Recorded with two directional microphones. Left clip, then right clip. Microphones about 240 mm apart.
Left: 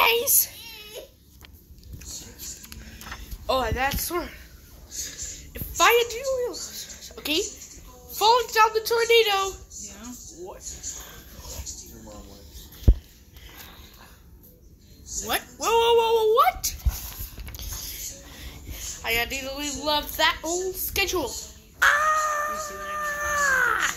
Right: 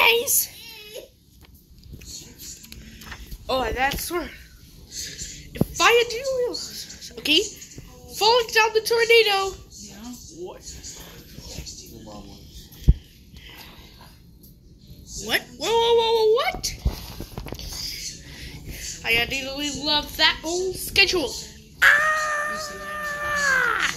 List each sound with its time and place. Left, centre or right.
0.0 s child singing: centre
2.7 s a sound: left
3.4 s a woman's voice: centre
4.9 s a sound: centre
8.2 s a woman's voice: centre
15.2 s speech: centre
17.5 s whispering: left
19.0 s speech: centre
21.7 s cat: centre